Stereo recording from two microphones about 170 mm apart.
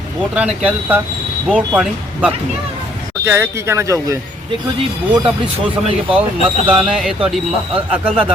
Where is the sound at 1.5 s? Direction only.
5° right (ahead or behind).